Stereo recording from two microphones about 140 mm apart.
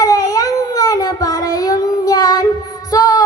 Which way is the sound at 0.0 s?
25° left (ahead or behind).